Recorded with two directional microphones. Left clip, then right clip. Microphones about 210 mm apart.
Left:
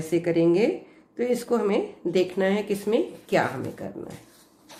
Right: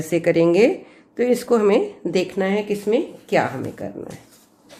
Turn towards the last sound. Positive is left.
turn(degrees=-15)  # may be behind; listen again after turning